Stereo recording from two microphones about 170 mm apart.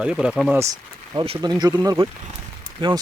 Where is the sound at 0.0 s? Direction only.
5° right (ahead or behind).